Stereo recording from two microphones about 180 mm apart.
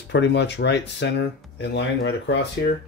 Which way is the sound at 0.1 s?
75° left (ahead or behind).